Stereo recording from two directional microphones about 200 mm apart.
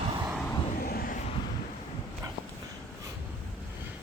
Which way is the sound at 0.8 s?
50° left (ahead or behind).